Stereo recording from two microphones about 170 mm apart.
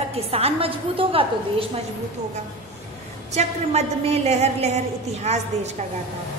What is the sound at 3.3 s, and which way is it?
A woman's voice, 40° right (ahead or behind).